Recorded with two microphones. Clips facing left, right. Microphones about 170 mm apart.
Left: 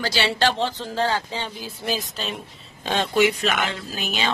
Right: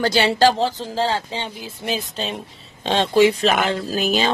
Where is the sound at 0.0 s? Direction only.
40° right (ahead or behind).